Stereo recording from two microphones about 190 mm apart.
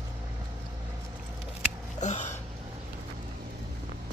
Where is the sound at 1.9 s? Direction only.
40° left (ahead or behind).